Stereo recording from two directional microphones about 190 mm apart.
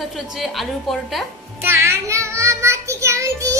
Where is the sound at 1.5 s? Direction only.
15° right (ahead or behind).